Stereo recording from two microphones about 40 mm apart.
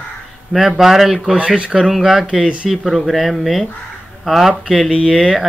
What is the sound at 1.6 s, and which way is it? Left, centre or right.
Speech, right.